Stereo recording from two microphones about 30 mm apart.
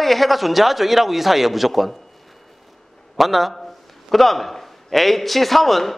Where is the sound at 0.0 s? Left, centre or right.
Centre.